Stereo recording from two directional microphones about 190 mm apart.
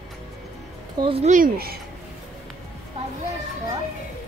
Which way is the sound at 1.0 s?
30° right (ahead or behind).